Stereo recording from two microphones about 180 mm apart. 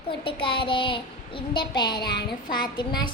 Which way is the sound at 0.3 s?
30° left (ahead or behind).